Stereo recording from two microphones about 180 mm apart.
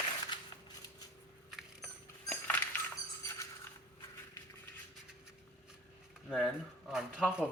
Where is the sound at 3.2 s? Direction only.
15° left (ahead or behind).